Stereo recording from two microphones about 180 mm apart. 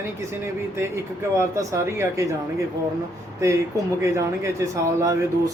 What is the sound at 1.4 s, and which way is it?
Speech, 15° right (ahead or behind).